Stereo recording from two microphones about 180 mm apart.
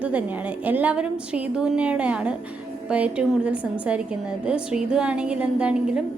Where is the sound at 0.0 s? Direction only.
5° right (ahead or behind).